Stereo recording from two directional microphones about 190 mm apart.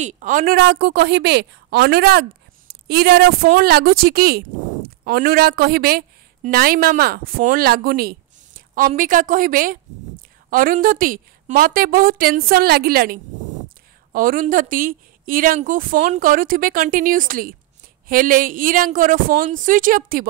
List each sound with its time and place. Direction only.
0.0 s a woman's voice: 40° right (ahead or behind)